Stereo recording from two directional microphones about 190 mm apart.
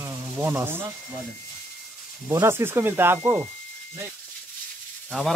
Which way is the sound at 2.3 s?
15° right (ahead or behind).